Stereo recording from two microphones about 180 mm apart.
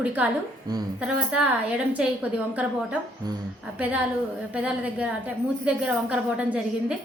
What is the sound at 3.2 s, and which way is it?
Speech, 20° right (ahead or behind).